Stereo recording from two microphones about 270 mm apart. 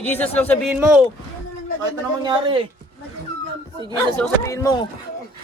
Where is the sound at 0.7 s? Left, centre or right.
Centre.